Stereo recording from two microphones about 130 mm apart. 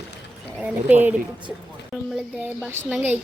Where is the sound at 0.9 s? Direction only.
15° right (ahead or behind).